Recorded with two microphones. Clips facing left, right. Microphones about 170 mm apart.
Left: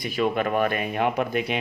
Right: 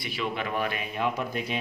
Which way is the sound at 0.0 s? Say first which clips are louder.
Left 8 dB; 45° left (ahead or behind).